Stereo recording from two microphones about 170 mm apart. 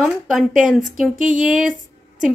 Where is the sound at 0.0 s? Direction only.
Centre (ahead or behind).